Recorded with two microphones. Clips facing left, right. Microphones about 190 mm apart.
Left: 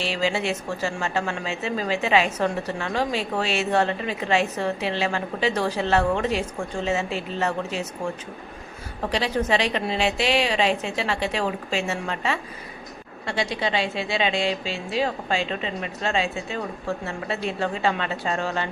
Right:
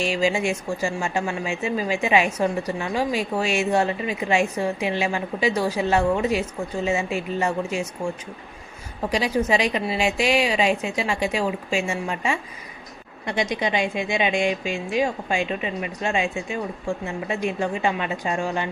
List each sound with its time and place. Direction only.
0.0 s speech: 10° right (ahead or behind)